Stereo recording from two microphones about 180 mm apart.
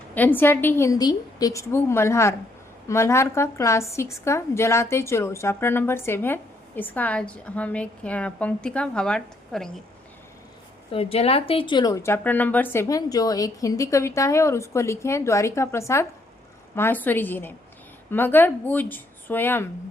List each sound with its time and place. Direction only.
0.1 s a woman's voice: 10° left (ahead or behind)
10.9 s a woman's voice: 35° left (ahead or behind); by 19.6 s 10° left (ahead or behind)